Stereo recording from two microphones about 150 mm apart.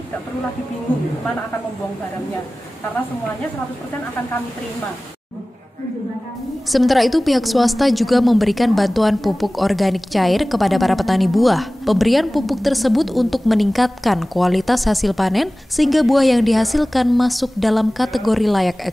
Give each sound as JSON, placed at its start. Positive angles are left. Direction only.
{"t": 6.7, "sound": "a woman's voice", "side_deg": 0}